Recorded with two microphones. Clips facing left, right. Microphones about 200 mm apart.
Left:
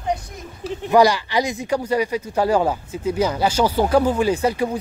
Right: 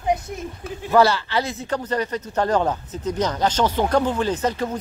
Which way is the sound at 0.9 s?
15° left (ahead or behind).